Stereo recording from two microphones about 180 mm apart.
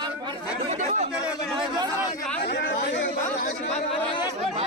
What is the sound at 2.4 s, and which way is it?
Chatter, 70° left (ahead or behind).